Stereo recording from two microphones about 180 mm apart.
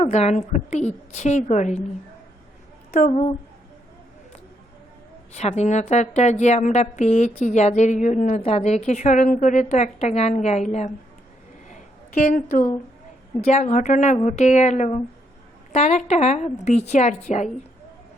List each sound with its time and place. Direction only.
0.0 s a woman's voice: 40° left (ahead or behind)
2.9 s a woman's voice: 35° left (ahead or behind)
5.3 s a woman's voice: 40° left (ahead or behind)
11.7 s a sound: 50° left (ahead or behind)
13.5 s a woman's voice: 40° left (ahead or behind)